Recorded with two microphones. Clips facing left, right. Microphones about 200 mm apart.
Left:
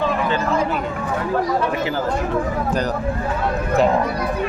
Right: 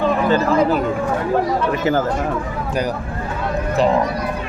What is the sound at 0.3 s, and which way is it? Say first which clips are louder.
Speech: right 5 dB; 40° right (ahead or behind).